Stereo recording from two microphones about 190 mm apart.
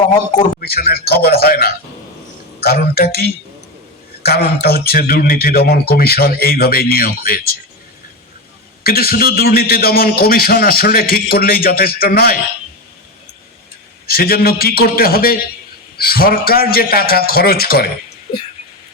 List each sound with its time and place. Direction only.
0.6 s a man's voice: 55° left (ahead or behind)
8.8 s a man's voice: 55° left (ahead or behind)
14.1 s a man's voice: 50° left (ahead or behind)